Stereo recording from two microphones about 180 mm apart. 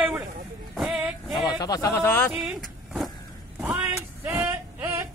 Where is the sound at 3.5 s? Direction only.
10° right (ahead or behind).